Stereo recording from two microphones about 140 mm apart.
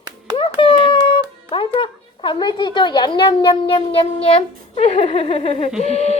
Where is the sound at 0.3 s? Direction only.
40° left (ahead or behind).